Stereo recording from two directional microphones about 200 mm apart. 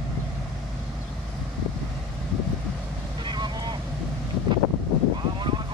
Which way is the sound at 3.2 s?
20° right (ahead or behind).